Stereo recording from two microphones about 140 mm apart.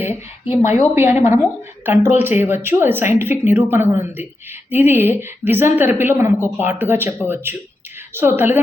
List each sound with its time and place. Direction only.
0.0 s a woman's voice: 15° right (ahead or behind)